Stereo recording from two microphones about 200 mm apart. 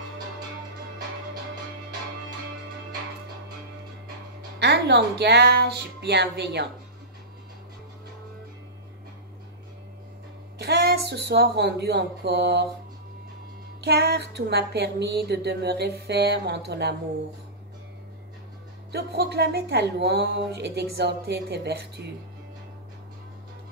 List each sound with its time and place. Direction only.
4.6 s music: 55° right (ahead or behind)
10.6 s a woman's voice: 55° right (ahead or behind)
13.7 s music: 55° right (ahead or behind)
18.9 s music: 55° right (ahead or behind)